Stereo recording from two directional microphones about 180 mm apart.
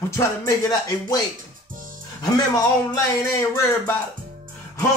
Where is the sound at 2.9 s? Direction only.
15° left (ahead or behind).